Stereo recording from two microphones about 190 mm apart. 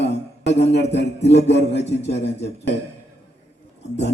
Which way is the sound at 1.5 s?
65° left (ahead or behind).